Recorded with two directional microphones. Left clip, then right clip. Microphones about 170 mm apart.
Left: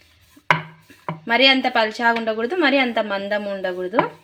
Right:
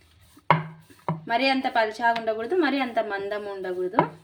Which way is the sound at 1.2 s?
35° left (ahead or behind).